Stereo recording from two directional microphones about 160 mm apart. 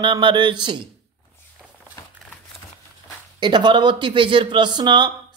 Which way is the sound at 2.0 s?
20° left (ahead or behind).